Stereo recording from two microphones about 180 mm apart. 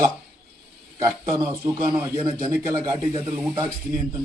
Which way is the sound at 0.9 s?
15° right (ahead or behind).